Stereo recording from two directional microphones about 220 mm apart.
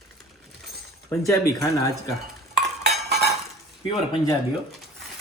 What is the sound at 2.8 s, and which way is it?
Dishes, 50° right (ahead or behind).